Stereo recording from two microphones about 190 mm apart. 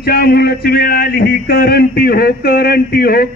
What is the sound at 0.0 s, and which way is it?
A man's voice, 55° left (ahead or behind).